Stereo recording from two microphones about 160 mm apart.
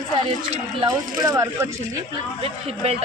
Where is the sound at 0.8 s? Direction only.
20° right (ahead or behind).